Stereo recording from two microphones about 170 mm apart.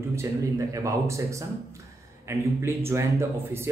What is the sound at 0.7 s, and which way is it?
Speech, 20° right (ahead or behind).